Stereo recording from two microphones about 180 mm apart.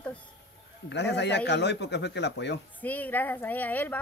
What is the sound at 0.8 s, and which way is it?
A man's voice, 70° left (ahead or behind).